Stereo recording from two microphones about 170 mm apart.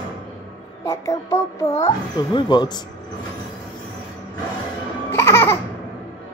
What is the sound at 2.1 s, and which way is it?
Speech, 25° left (ahead or behind).